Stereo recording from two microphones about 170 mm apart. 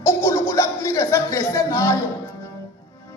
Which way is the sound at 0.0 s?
15° left (ahead or behind).